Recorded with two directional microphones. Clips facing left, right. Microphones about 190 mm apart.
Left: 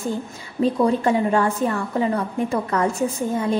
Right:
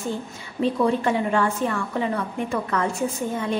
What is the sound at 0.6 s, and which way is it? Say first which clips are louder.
A woman's voice: left 2 dB; 35° left (ahead or behind).